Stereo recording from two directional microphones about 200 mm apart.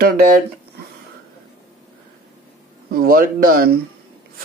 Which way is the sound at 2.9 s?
45° right (ahead or behind).